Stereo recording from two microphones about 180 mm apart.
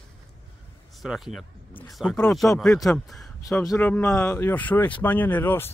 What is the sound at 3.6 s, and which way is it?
Speech, 15° left (ahead or behind).